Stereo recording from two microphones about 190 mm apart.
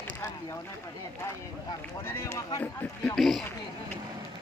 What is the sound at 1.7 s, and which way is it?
Run, 15° left (ahead or behind).